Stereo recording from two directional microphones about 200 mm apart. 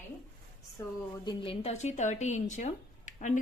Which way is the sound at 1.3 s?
25° left (ahead or behind).